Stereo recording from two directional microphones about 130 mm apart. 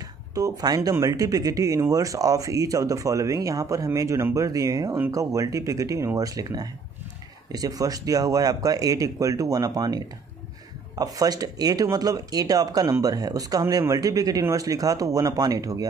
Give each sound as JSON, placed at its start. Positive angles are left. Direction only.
{"t": 0.3, "sound": "speech", "side_deg": -30}